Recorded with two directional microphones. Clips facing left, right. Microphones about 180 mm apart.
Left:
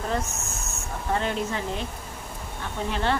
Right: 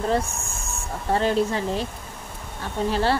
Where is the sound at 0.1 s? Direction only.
30° right (ahead or behind).